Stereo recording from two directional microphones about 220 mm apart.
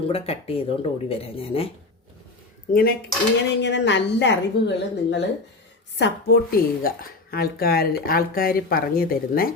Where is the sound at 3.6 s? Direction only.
55° left (ahead or behind).